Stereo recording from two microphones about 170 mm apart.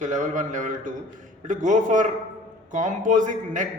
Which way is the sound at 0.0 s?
45° right (ahead or behind).